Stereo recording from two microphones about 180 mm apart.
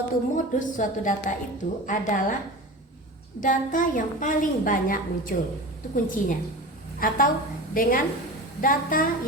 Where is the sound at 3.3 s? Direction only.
45° left (ahead or behind).